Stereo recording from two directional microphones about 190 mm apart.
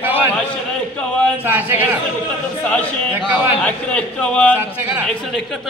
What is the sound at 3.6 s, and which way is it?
Speech, 5° left (ahead or behind).